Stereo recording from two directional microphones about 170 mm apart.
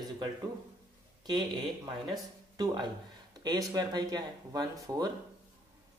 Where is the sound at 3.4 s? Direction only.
25° right (ahead or behind).